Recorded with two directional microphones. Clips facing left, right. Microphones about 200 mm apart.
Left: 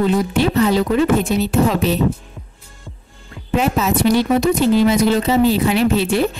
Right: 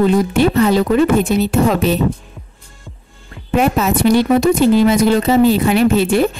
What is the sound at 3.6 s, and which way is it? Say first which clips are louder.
Speech: right 3 dB; 55° right (ahead or behind).